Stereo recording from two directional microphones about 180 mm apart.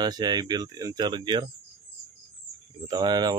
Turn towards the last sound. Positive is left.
turn(degrees=-20)  # may be behind; listen again after turning